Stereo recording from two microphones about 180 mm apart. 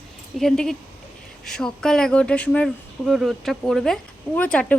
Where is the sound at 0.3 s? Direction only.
5° left (ahead or behind).